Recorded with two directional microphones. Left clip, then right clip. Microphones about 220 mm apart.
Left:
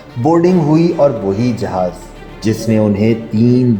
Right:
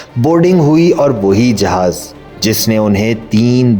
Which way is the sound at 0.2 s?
35° right (ahead or behind).